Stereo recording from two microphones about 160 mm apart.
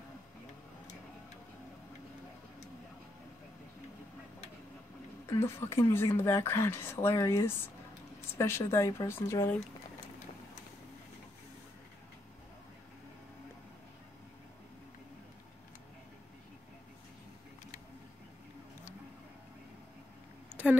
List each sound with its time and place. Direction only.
5.3 s speech: 15° left (ahead or behind)